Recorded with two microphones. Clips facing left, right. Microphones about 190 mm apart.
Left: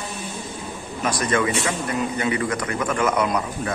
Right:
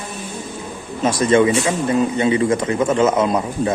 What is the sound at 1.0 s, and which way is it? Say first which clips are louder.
A man's voice: right 8 dB; 25° right (ahead or behind).